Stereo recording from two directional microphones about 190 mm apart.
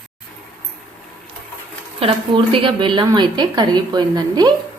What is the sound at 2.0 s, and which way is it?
A woman's voice, 30° right (ahead or behind).